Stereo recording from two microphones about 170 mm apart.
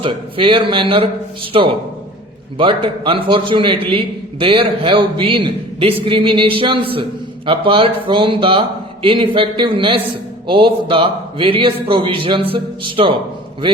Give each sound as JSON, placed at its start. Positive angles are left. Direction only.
{"t": 0.0, "sound": "a man's voice", "side_deg": -30}